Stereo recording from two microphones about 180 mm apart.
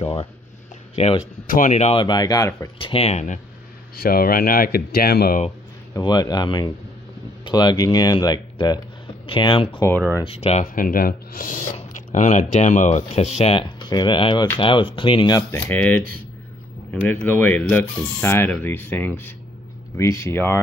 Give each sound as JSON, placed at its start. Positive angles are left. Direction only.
{"t": 0.0, "sound": "speech", "side_deg": 35}
{"t": 2.9, "sound": "speech", "side_deg": 35}
{"t": 3.9, "sound": "speech", "side_deg": 55}
{"t": 5.9, "sound": "speech", "side_deg": 25}
{"t": 10.6, "sound": "speech", "side_deg": 50}
{"t": 15.7, "sound": "speech", "side_deg": 10}